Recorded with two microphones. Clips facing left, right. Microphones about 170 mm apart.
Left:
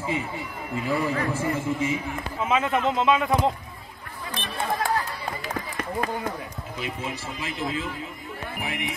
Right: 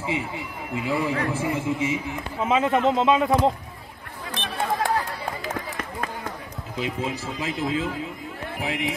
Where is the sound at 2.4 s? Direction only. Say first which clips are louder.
Right 3 dB; 30° right (ahead or behind).